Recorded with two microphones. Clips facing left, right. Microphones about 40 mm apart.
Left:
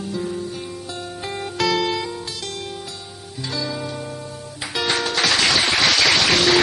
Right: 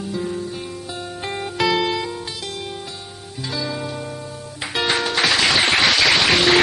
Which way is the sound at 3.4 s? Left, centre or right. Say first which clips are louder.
Right 1 dB; centre.